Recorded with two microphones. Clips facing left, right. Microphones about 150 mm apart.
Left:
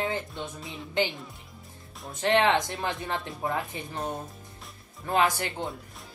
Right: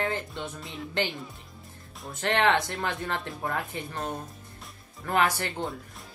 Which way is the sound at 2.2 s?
20° left (ahead or behind).